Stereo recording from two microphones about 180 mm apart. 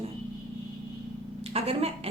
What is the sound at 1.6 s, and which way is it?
Speech, 35° right (ahead or behind).